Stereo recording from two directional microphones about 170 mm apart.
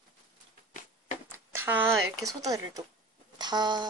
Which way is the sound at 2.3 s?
20° right (ahead or behind).